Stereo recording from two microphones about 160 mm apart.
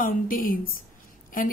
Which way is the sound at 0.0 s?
60° left (ahead or behind).